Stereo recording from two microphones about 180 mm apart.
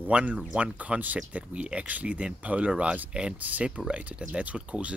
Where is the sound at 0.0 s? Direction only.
10° right (ahead or behind).